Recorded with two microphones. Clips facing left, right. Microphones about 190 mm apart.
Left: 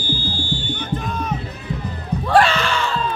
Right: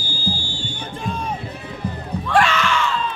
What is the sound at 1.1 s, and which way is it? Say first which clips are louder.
Music: left 1 dB; 30° right (ahead or behind).